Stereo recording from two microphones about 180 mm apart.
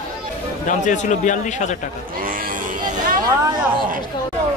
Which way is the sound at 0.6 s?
45° left (ahead or behind).